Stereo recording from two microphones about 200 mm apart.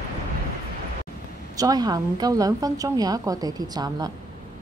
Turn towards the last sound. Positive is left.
turn(degrees=-20)  # may be behind; listen again after turning